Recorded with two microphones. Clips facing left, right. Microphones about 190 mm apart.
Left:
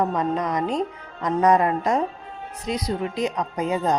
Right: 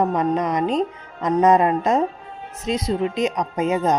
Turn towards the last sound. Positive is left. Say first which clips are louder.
# right 3 dB
turn(degrees=-20)  # may be behind; listen again after turning